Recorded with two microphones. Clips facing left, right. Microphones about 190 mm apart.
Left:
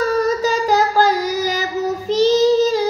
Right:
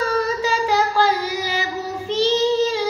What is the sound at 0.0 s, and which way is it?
Singing, 40° left (ahead or behind).